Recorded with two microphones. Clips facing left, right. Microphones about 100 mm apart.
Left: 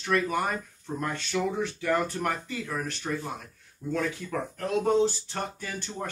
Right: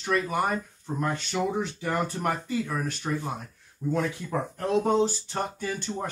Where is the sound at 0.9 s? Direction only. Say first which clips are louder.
Right 2 dB; 20° right (ahead or behind).